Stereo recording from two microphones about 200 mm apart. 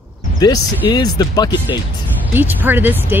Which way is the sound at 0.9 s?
20° left (ahead or behind).